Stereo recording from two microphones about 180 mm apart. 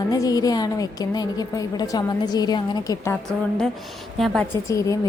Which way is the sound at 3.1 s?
5° left (ahead or behind).